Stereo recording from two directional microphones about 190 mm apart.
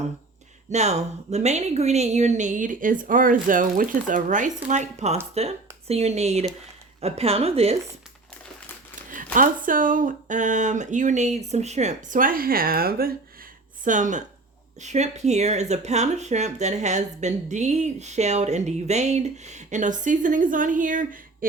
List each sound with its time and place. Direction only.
0.7 s speech: 35° right (ahead or behind)
9.1 s speech: 45° right (ahead or behind)